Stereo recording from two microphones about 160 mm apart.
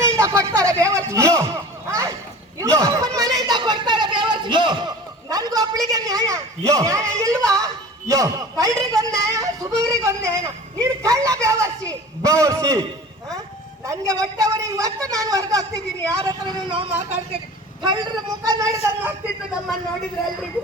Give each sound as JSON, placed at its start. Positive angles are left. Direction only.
{"t": 0.2, "sound": "a sound", "side_deg": -20}
{"t": 8.8, "sound": "a woman's voice", "side_deg": -20}
{"t": 13.8, "sound": "a woman's voice", "side_deg": -20}
{"t": 16.8, "sound": "speech", "side_deg": -35}
{"t": 17.8, "sound": "a woman's voice", "side_deg": -25}